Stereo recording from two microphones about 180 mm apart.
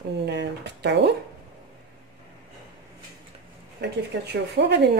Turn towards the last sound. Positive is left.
turn(degrees=-70)  # may be behind; listen again after turning